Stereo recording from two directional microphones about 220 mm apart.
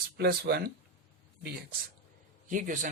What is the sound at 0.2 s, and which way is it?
Speech, 45° right (ahead or behind).